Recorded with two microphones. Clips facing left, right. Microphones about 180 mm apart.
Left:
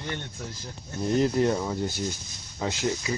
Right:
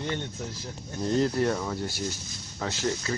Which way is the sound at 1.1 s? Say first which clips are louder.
Left 2 dB; 20° left (ahead or behind).